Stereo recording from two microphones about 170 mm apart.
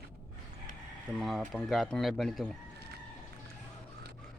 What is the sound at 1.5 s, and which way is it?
Speech, centre (ahead or behind).